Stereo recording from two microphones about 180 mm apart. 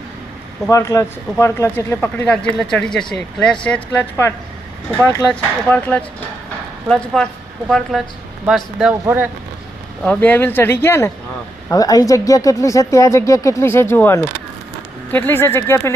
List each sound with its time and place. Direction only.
0.7 s speech: 15° left (ahead or behind); by 9.3 s 10° right (ahead or behind)
10.0 s speech: 5° left (ahead or behind)